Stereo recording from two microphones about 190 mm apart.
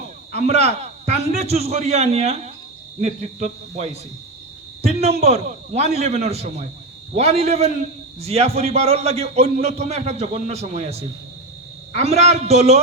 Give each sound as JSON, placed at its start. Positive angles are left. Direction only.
{"t": 0.3, "sound": "a man's voice", "side_deg": -35}